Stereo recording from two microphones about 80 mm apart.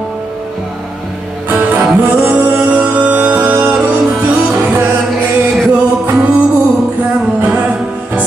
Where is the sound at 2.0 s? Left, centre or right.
Centre.